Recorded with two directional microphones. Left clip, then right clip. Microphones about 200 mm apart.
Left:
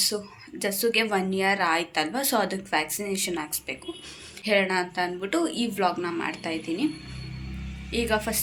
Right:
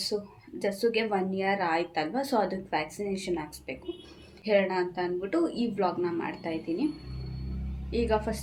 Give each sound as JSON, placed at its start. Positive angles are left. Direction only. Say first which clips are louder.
{"t": 0.6, "sound": "a woman's voice", "louder": "left 3 dB", "side_deg": 0}
{"t": 7.9, "sound": "a woman's voice", "louder": "left 2 dB", "side_deg": 0}